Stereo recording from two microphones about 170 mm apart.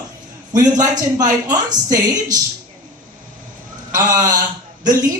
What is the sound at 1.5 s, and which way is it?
Speech, 20° right (ahead or behind).